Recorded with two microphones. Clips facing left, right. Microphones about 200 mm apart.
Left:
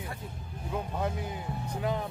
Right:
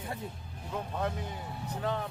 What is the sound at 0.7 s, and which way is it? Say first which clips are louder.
Speech: left 1 dB; 10° left (ahead or behind).